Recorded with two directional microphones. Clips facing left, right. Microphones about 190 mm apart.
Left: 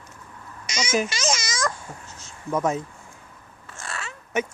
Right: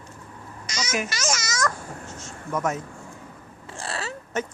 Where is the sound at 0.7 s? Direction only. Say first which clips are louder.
Left 4 dB; 25° left (ahead or behind).